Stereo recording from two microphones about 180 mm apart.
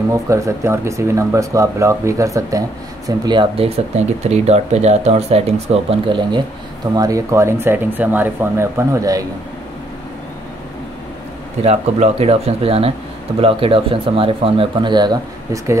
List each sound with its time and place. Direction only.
0.3 s speech: 15° right (ahead or behind)
11.6 s speech: 35° right (ahead or behind); by 15.8 s 15° right (ahead or behind)